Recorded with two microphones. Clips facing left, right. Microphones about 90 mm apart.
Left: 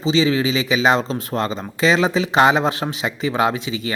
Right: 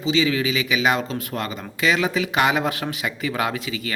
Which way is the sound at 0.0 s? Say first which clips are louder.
Left 3 dB; 30° left (ahead or behind).